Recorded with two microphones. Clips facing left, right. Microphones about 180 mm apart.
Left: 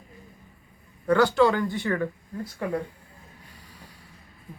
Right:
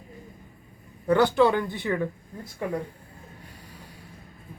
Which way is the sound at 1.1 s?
20° right (ahead or behind).